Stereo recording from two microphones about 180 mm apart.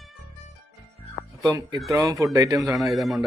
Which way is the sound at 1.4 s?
20° right (ahead or behind).